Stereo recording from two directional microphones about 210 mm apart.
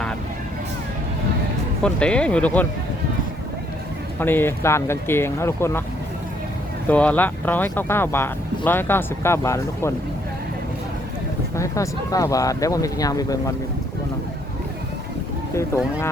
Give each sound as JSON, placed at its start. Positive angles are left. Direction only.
{"t": 1.8, "sound": "speech", "side_deg": 5}
{"t": 4.2, "sound": "speech", "side_deg": 10}
{"t": 6.8, "sound": "speech", "side_deg": 5}
{"t": 11.5, "sound": "speech", "side_deg": 15}
{"t": 15.5, "sound": "speech", "side_deg": 15}